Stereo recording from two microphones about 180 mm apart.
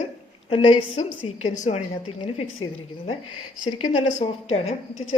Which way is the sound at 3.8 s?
35° left (ahead or behind).